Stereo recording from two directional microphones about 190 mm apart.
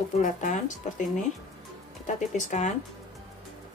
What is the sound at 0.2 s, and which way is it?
Speech, 40° left (ahead or behind).